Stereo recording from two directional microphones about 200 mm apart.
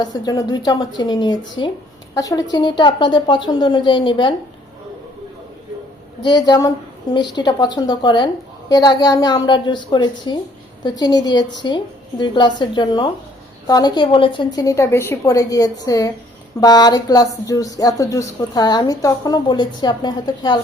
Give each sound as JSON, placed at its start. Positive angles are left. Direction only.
{"t": 0.0, "sound": "a woman's voice", "side_deg": 20}
{"t": 6.2, "sound": "a woman's voice", "side_deg": 20}